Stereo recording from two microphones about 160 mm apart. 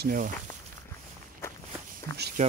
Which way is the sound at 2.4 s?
45° right (ahead or behind).